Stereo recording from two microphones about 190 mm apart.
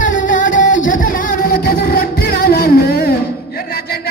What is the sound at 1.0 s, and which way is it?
Music, 50° left (ahead or behind).